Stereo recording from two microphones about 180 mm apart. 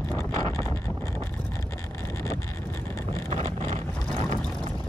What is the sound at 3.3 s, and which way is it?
Vehicle, 35° right (ahead or behind).